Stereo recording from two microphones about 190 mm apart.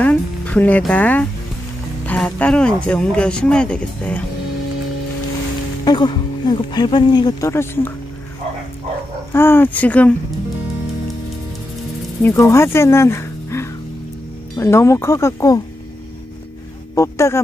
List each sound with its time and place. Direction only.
0.0 s speech: 5° left (ahead or behind)
5.9 s speech: 25° left (ahead or behind)
9.3 s speech: 10° left (ahead or behind)
12.2 s speech: 10° left (ahead or behind)
16.9 s speech: 15° left (ahead or behind)